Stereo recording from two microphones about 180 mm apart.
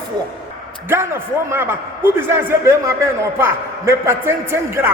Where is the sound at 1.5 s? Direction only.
10° right (ahead or behind).